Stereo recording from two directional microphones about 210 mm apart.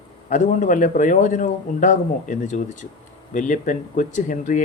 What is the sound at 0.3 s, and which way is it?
Speech, 35° left (ahead or behind).